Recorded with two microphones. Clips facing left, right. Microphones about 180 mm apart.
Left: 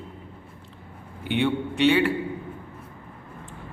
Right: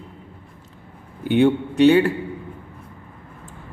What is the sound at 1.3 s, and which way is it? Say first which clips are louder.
Speech: right 7 dB; 40° right (ahead or behind).